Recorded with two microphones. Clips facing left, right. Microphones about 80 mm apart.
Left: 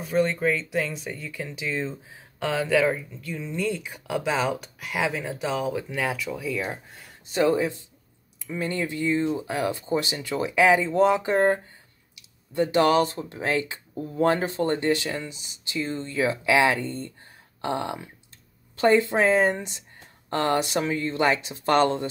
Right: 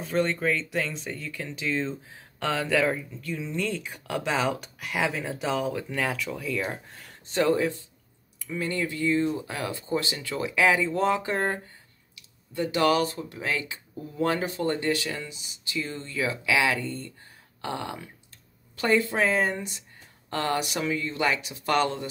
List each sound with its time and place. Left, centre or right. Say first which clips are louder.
0.0 s speech: left 3 dB; centre; by 22.1 s left